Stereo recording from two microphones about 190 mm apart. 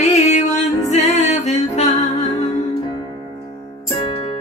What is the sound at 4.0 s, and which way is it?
Music, 30° left (ahead or behind).